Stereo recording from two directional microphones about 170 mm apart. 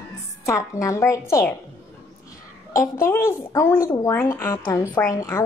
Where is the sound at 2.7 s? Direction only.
15° left (ahead or behind).